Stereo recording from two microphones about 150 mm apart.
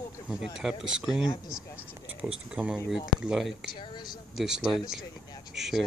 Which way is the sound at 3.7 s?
30° left (ahead or behind).